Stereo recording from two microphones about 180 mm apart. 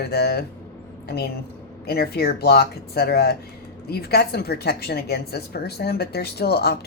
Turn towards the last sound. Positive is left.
turn(degrees=60)  # may be behind; listen again after turning